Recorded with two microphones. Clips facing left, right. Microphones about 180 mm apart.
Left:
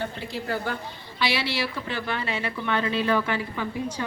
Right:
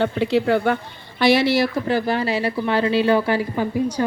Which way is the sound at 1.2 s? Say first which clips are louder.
Right 11 dB; 45° right (ahead or behind).